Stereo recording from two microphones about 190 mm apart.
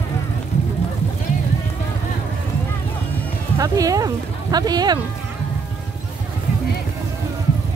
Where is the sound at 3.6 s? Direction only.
20° right (ahead or behind).